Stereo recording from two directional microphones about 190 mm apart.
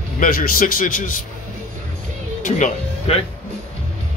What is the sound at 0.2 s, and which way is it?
Speech, 45° left (ahead or behind).